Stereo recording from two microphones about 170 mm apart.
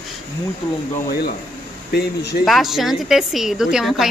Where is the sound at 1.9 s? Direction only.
75° left (ahead or behind).